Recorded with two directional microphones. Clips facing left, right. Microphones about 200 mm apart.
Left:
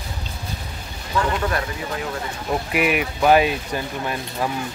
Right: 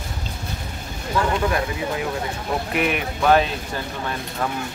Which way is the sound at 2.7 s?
5° left (ahead or behind).